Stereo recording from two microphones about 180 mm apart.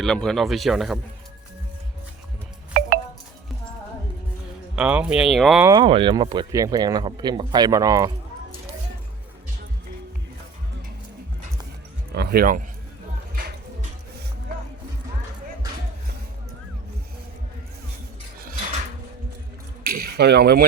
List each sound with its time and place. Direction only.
0.0 s speech: 5° left (ahead or behind)
2.8 s music: 55° right (ahead or behind)
4.7 s speech: 5° right (ahead or behind)
5.6 s speech: 25° right (ahead or behind)
12.1 s speech: 60° right (ahead or behind)
19.8 s a sound: 55° right (ahead or behind)